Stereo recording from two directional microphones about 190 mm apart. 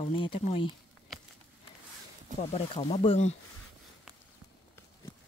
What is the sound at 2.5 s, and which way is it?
Speech, 30° left (ahead or behind).